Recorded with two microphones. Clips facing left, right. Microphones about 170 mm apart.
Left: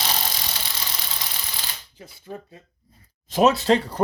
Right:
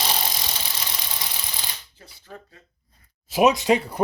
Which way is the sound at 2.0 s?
15° left (ahead or behind).